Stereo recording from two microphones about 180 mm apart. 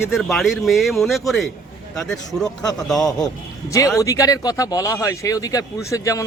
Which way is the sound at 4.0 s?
20° left (ahead or behind).